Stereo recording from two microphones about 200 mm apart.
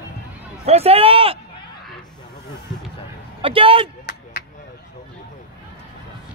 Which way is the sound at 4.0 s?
55° left (ahead or behind).